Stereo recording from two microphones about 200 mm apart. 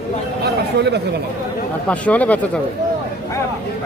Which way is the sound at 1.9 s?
5° left (ahead or behind).